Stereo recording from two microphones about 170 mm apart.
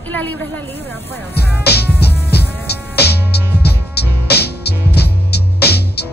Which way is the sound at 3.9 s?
70° left (ahead or behind).